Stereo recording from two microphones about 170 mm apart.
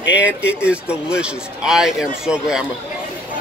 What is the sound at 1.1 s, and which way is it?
A man's voice, 5° right (ahead or behind).